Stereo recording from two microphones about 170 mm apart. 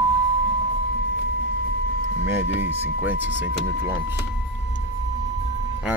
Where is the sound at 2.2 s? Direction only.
15° right (ahead or behind).